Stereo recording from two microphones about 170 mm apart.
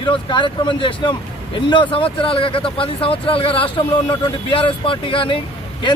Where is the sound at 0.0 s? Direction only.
30° left (ahead or behind).